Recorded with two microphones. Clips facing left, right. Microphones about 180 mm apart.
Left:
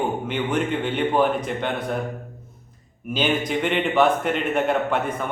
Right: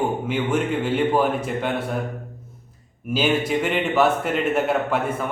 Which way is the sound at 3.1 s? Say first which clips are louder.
Right 2 dB; 5° right (ahead or behind).